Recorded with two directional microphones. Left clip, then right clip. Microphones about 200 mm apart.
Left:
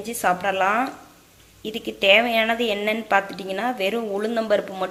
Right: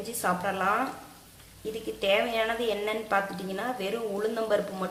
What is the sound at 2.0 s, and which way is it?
A woman's voice, 30° left (ahead or behind).